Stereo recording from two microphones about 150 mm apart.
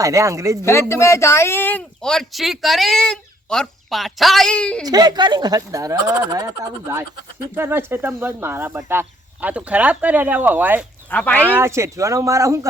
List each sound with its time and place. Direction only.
0.0 s speech: 20° right (ahead or behind)
0.6 s speech: 20° left (ahead or behind)
4.9 s speech: 25° right (ahead or behind); by 10.8 s 10° right (ahead or behind)
11.1 s speech: 10° left (ahead or behind)
11.3 s speech: 15° right (ahead or behind)